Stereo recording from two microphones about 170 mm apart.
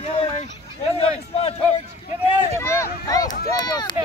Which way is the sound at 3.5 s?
25° left (ahead or behind).